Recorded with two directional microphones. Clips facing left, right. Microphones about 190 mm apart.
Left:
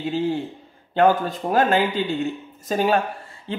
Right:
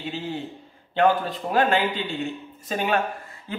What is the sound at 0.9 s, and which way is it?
A man's voice, 45° left (ahead or behind).